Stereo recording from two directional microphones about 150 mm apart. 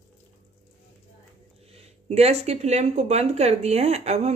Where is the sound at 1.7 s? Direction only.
45° right (ahead or behind).